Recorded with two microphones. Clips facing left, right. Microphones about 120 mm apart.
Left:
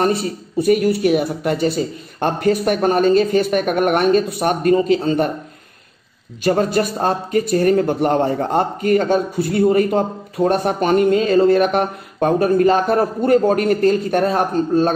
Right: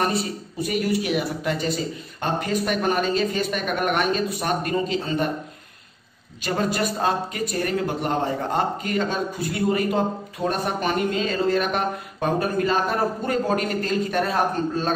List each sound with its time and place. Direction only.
0.0 s speech: 45° left (ahead or behind)
6.4 s speech: 45° left (ahead or behind)